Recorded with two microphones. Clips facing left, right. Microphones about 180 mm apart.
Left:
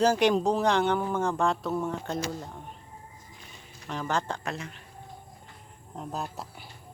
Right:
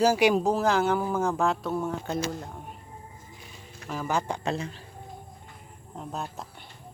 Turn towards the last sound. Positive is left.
turn(degrees=0)  # may be behind; listen again after turning